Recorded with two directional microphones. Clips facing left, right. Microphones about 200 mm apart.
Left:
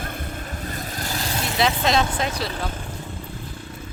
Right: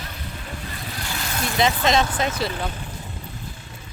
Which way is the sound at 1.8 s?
Centre (ahead or behind).